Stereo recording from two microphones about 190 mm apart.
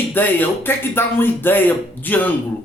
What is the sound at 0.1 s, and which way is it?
Speech, 10° left (ahead or behind).